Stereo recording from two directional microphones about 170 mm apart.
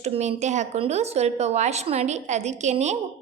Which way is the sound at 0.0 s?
40° right (ahead or behind).